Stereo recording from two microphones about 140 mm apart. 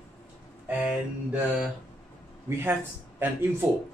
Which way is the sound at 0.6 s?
10° right (ahead or behind).